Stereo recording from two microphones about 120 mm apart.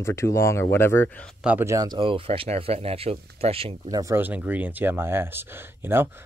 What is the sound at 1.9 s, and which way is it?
Speech, 45° right (ahead or behind).